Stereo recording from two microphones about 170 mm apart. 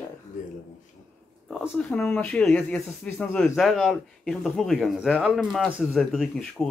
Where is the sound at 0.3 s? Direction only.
50° left (ahead or behind).